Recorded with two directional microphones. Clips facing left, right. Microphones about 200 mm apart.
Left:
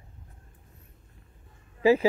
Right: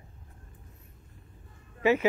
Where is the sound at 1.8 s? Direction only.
35° left (ahead or behind).